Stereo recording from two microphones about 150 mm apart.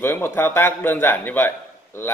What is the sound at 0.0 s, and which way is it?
Speech, 15° left (ahead or behind).